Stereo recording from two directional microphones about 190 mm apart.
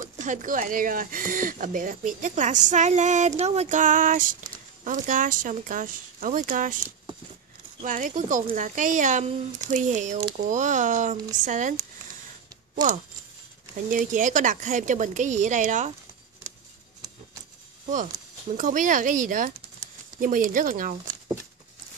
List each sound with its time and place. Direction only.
0.0 s speech: 40° right (ahead or behind)
7.8 s a woman's voice: 45° right (ahead or behind)
13.8 s a woman's voice: 45° right (ahead or behind)
18.6 s speech: 45° right (ahead or behind)